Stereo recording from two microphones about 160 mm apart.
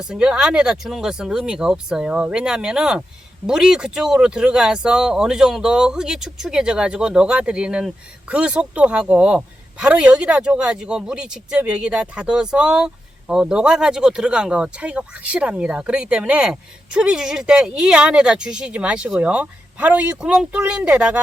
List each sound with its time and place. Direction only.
0.0 s speech: 5° right (ahead or behind)